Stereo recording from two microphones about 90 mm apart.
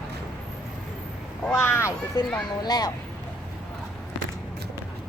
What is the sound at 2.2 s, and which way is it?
Speech, 50° left (ahead or behind).